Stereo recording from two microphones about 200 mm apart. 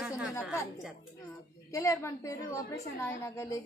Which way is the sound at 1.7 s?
15° left (ahead or behind).